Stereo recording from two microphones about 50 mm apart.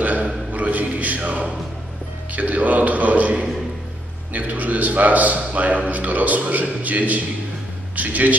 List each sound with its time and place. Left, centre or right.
0.0 s a sound: right
0.5 s mantra: right
2.3 s a man's voice: right